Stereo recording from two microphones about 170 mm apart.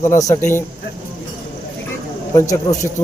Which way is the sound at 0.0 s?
20° left (ahead or behind).